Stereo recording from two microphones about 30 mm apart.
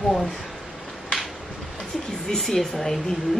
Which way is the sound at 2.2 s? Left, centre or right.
Centre.